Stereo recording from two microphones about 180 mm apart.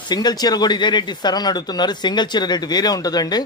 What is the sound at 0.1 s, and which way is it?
A man's voice, 25° left (ahead or behind).